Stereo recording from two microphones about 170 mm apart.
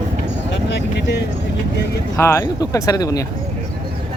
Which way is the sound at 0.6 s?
85° left.